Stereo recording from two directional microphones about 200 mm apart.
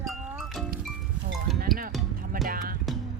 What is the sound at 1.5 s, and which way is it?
Music, 45° right (ahead or behind).